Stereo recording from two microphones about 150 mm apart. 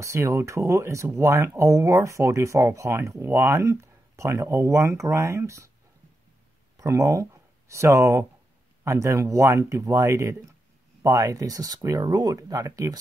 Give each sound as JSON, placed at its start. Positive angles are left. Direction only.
{"t": 0.0, "sound": "speech", "side_deg": -20}
{"t": 6.8, "sound": "speech", "side_deg": -20}